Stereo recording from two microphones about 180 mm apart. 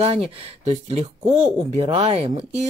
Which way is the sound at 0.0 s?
35° right (ahead or behind).